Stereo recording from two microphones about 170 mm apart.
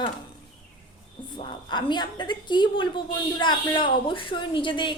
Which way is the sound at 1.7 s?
25° left (ahead or behind).